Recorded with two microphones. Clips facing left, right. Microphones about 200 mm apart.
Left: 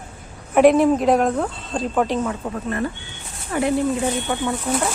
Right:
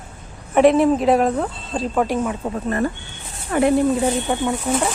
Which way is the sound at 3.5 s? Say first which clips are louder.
Right 4 dB; 55° right (ahead or behind).